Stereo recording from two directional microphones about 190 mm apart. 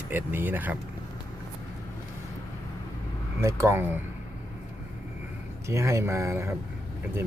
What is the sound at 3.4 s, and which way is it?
Speech, 15° right (ahead or behind).